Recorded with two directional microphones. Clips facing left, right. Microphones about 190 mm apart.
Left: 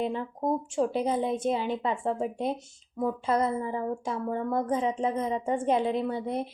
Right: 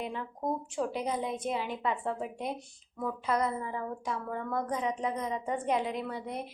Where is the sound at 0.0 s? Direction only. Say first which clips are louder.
Left 6 dB; 30° left (ahead or behind).